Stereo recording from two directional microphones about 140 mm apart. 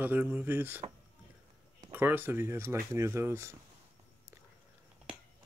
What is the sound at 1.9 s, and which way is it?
Speech, 15° right (ahead or behind).